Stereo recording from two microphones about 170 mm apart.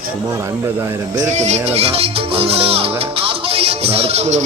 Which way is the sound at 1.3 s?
45° right (ahead or behind).